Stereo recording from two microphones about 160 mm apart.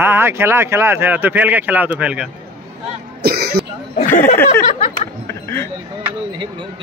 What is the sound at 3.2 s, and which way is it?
Speech, 80° right.